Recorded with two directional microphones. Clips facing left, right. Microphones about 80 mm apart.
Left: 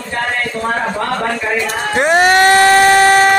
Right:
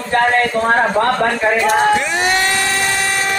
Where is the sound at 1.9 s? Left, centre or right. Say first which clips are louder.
Left 6 dB; left.